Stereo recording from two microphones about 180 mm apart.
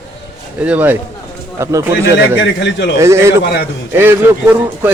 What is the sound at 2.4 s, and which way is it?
Speech, 75° left (ahead or behind).